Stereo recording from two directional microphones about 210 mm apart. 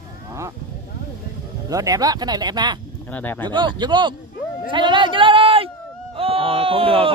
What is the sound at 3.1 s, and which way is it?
Speech, 10° left (ahead or behind).